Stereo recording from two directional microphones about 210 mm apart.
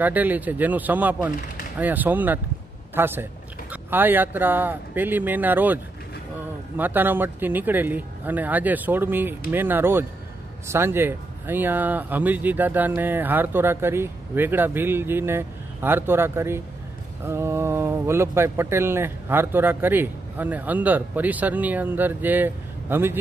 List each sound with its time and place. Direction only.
0.0 s a man's voice: 10° right (ahead or behind)
6.8 s speech: 10° right (ahead or behind)